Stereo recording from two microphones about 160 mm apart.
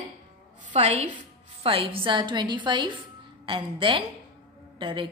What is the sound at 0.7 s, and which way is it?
A woman's voice, 40° right (ahead or behind).